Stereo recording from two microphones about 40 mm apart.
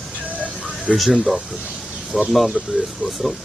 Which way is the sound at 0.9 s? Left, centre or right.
Centre.